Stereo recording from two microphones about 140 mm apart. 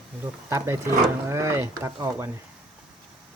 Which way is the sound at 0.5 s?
20° right (ahead or behind).